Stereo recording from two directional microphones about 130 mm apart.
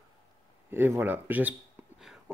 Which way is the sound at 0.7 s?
15° right (ahead or behind).